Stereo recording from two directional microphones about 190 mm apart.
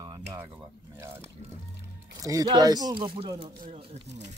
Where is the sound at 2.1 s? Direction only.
20° right (ahead or behind); by 4.2 s 35° right (ahead or behind).